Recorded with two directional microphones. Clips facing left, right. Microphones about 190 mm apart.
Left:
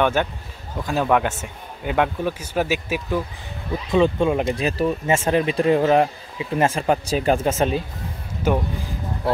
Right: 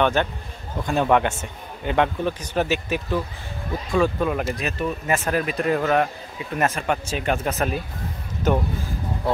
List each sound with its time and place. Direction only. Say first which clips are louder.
0.0 s a man's voice: even; 10° left (ahead or behind)
3.9 s speech: left 3 dB; 25° left (ahead or behind)
8.5 s a man's voice: even; 10° left (ahead or behind)